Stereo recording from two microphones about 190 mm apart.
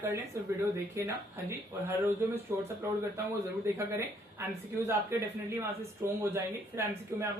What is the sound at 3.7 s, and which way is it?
Speech, 15° right (ahead or behind).